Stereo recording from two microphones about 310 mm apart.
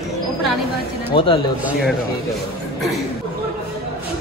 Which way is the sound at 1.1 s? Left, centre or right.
Centre.